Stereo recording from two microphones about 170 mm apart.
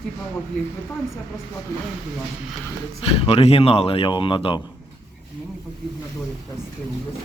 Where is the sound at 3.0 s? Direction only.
35° left (ahead or behind).